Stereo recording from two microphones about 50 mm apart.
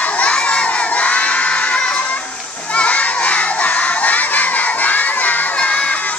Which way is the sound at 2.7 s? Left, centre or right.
Left.